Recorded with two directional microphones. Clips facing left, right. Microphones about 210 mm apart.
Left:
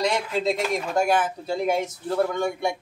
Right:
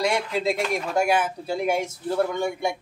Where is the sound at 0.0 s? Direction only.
5° right (ahead or behind).